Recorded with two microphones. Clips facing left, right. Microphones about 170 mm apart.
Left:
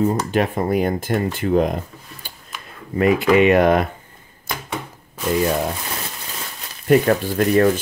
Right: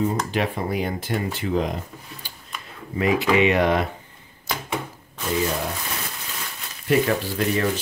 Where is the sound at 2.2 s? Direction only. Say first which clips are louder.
Left 2 dB; 50° left (ahead or behind).